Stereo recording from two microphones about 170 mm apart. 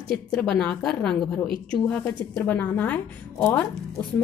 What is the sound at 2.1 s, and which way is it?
A woman's voice, 20° left (ahead or behind).